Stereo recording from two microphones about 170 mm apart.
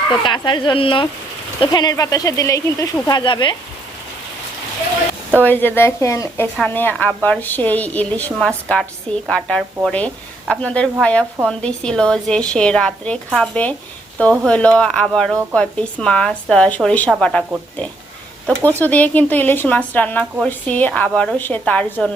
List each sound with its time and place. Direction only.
0.1 s speech: 30° left (ahead or behind)
5.4 s speech: 10° left (ahead or behind)
18.4 s speech: 10° left (ahead or behind)